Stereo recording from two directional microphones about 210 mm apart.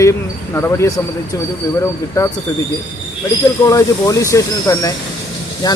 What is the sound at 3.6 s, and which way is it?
Speech, 15° left (ahead or behind).